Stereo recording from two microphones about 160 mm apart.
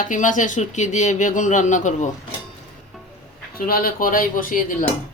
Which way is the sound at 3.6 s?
65° left (ahead or behind).